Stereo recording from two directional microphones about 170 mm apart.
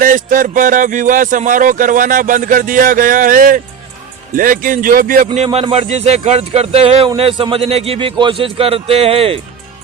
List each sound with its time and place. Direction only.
0.0 s speech: 55° right (ahead or behind)
5.5 s a man's voice: 35° right (ahead or behind)